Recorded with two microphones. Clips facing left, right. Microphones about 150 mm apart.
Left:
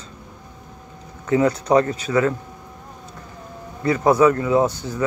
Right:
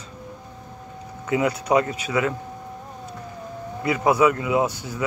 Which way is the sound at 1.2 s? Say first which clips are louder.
Left 4 dB; 10° right (ahead or behind).